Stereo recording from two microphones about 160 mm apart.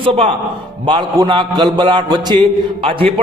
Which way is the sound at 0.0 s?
35° right (ahead or behind).